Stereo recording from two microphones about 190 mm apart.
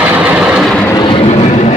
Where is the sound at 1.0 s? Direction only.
25° left (ahead or behind).